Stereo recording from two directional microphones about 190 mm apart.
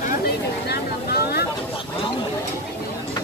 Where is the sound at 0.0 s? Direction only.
50° left (ahead or behind).